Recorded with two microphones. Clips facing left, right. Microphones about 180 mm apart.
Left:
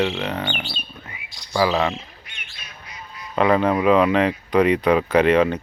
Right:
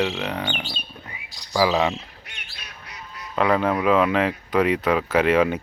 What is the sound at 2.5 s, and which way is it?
Goose, 65° right (ahead or behind).